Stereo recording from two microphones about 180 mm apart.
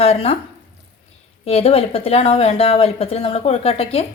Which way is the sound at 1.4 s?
35° left (ahead or behind).